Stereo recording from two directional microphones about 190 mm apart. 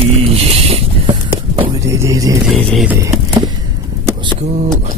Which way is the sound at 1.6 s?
15° right (ahead or behind).